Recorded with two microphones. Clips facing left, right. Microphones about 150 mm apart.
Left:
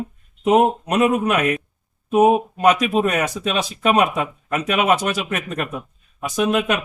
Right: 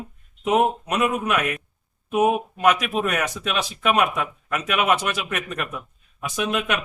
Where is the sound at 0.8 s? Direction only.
35° left (ahead or behind).